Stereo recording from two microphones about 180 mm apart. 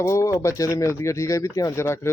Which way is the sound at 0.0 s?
15° left (ahead or behind).